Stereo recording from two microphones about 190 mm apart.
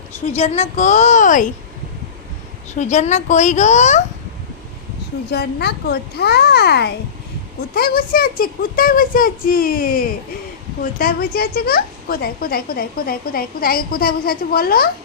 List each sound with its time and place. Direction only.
0.3 s a child's voice: 35° left (ahead or behind)
2.7 s a child's voice: 40° left (ahead or behind)
5.3 s a child's voice: 55° left (ahead or behind)